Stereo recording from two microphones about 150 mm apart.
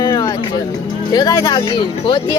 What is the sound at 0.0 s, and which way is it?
Music, 25° left (ahead or behind).